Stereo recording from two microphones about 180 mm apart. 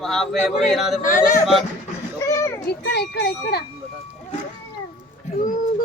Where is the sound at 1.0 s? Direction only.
45° left (ahead or behind).